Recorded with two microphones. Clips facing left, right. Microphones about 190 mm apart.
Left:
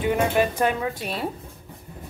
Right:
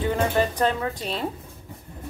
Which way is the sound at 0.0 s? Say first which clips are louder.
Left 1 dB; 15° left (ahead or behind).